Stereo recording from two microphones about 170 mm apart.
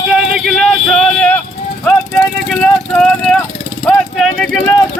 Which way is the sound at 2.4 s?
5° left (ahead or behind).